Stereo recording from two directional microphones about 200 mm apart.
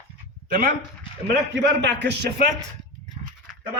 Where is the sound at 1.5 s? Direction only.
60° right (ahead or behind).